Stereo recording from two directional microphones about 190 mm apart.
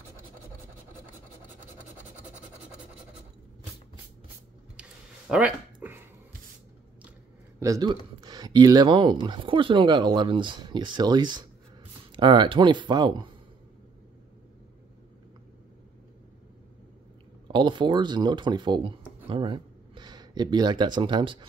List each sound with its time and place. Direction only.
4.8 s a sound: 5° right (ahead or behind)
7.6 s speech: 20° right (ahead or behind)
17.5 s speech: 25° right (ahead or behind)